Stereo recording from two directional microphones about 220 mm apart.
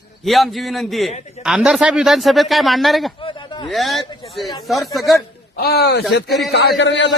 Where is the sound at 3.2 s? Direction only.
20° left (ahead or behind).